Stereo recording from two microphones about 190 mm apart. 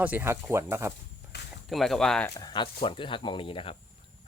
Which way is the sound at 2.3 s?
25° left (ahead or behind).